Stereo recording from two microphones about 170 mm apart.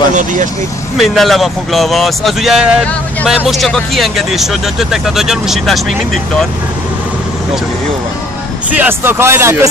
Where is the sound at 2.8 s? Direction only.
10° left (ahead or behind).